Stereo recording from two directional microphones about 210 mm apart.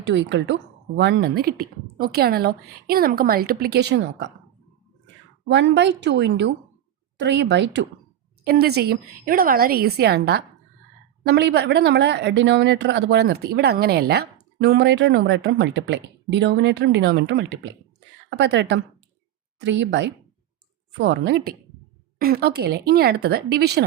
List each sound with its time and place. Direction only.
0.0 s speech: 55° right (ahead or behind)
5.5 s a woman's voice: 55° right (ahead or behind)